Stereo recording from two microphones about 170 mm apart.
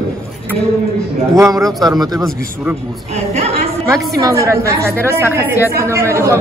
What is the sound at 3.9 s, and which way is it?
A woman's voice, 20° right (ahead or behind).